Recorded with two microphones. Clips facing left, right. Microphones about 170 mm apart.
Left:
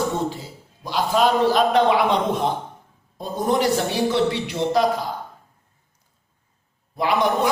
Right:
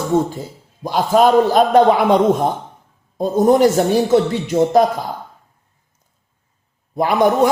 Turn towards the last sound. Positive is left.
turn(degrees=-45)  # may be behind; listen again after turning